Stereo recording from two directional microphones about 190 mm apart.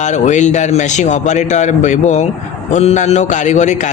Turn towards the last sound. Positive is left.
turn(degrees=40)  # may be behind; listen again after turning